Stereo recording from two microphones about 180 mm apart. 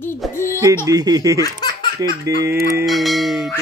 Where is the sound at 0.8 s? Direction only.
20° right (ahead or behind).